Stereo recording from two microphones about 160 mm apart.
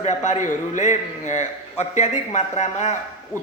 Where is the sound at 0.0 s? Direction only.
50° left (ahead or behind).